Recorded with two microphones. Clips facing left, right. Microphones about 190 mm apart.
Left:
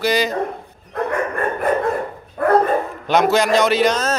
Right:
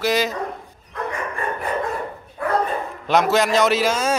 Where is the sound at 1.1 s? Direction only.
60° left (ahead or behind).